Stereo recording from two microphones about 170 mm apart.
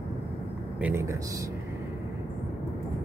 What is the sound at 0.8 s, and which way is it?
Speech, 15° right (ahead or behind).